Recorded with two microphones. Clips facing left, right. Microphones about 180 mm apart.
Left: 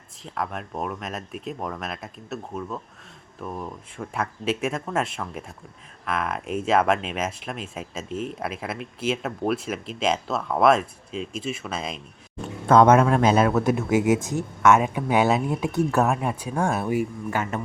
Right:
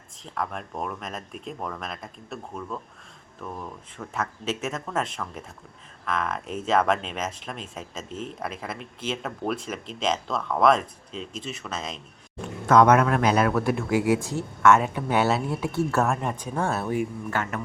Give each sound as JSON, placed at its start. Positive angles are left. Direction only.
{"t": 0.3, "sound": "speech", "side_deg": 5}
{"t": 12.6, "sound": "speech", "side_deg": 25}